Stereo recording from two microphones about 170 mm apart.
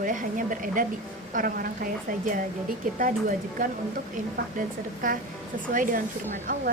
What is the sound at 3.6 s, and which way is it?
A woman's voice, 45° right (ahead or behind).